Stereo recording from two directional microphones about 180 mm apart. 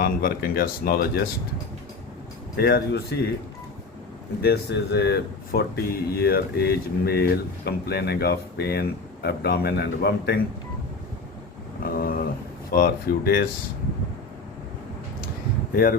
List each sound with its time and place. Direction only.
0.0 s speech: 55° left (ahead or behind)
2.6 s speech: 60° left (ahead or behind)
4.4 s speech: 65° left (ahead or behind)
11.8 s a sound: 55° left (ahead or behind)
12.7 s speech: 55° left (ahead or behind)
15.7 s speech: 55° left (ahead or behind)